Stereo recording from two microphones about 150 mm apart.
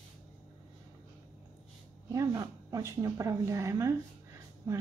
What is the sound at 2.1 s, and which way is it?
Speech, 20° right (ahead or behind).